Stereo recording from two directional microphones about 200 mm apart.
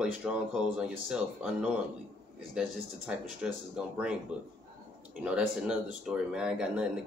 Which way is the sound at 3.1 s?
5° right (ahead or behind).